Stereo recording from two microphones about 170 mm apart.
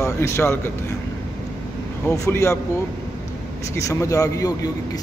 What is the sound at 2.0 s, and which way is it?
Speech, 20° left (ahead or behind).